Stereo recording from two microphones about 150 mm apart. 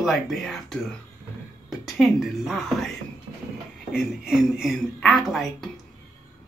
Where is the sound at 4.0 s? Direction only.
Centre (ahead or behind).